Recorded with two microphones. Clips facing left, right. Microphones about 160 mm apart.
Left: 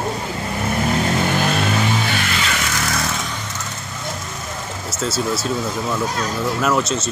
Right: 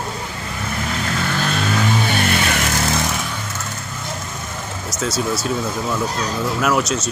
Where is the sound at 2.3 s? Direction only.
50° right (ahead or behind).